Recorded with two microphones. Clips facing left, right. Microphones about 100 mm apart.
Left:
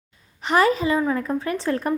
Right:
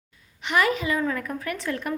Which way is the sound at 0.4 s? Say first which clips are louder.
Left 5 dB; 35° left (ahead or behind).